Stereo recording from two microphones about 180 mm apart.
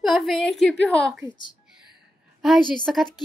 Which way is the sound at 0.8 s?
Centre (ahead or behind).